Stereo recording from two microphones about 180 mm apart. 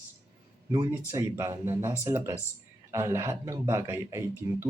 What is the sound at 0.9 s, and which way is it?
A man's voice, 15° right (ahead or behind).